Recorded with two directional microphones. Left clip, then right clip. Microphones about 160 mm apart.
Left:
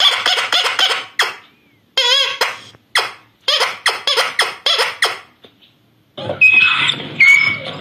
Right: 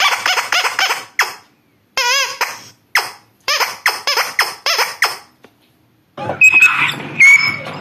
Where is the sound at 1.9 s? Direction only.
20° right (ahead or behind).